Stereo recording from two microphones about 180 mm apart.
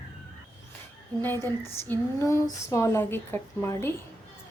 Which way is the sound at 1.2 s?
10° left (ahead or behind).